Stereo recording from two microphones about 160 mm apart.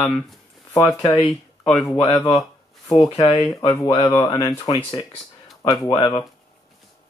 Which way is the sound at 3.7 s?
25° left (ahead or behind).